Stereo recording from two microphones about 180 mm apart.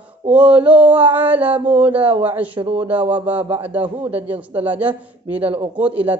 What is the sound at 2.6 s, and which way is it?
Mantra, 30° right (ahead or behind).